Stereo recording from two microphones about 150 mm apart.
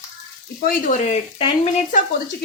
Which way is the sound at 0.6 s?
65° left (ahead or behind).